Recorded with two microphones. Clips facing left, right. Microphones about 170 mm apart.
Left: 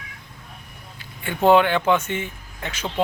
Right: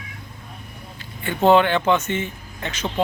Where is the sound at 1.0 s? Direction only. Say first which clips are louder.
Right 1 dB; 10° left (ahead or behind).